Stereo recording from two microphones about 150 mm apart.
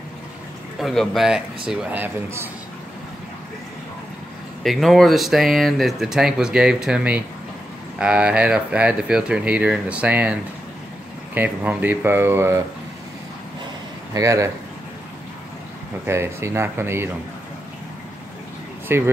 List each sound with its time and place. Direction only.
0.7 s speech: centre (ahead or behind)
4.6 s speech: centre (ahead or behind)
11.3 s speech: 10° right (ahead or behind)
14.1 s speech: 20° right (ahead or behind)
16.1 s speech: 15° right (ahead or behind)
18.9 s speech: 15° right (ahead or behind)